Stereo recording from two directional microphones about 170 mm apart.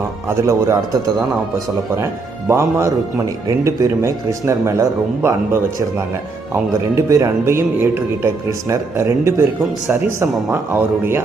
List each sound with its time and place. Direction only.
0.3 s speech: 15° right (ahead or behind)
2.5 s speech: 15° right (ahead or behind)
10.5 s speech: 15° right (ahead or behind)